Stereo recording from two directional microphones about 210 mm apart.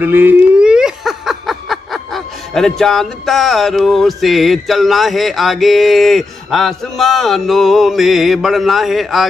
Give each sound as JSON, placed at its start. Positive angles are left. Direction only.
{"t": 0.0, "sound": "speech", "side_deg": -10}